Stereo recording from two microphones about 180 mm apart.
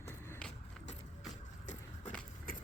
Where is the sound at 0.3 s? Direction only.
5° left (ahead or behind).